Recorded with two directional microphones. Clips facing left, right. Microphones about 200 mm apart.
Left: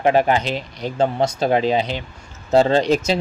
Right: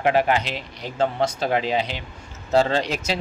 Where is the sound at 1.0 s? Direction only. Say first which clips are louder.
Left 3 dB; 15° left (ahead or behind).